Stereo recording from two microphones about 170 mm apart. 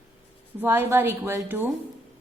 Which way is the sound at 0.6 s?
15° right (ahead or behind).